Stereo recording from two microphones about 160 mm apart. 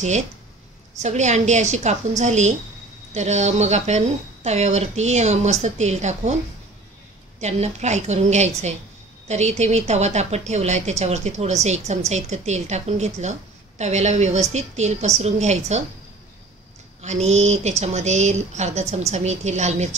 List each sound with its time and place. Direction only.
1.0 s speech: 45° right (ahead or behind)
7.3 s speech: 45° right (ahead or behind)
17.0 s speech: 45° right (ahead or behind)